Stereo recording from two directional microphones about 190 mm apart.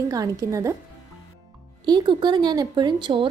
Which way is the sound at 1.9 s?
25° right (ahead or behind).